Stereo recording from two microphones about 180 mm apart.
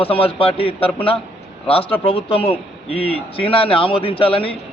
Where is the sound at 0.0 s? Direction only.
30° left (ahead or behind).